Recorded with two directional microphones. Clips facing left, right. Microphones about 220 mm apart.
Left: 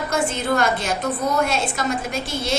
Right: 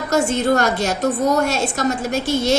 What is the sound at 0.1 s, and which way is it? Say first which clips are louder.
A woman's voice: right 6 dB; 45° right (ahead or behind).